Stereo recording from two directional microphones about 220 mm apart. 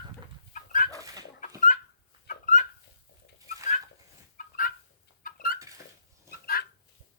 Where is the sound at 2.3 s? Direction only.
35° left (ahead or behind).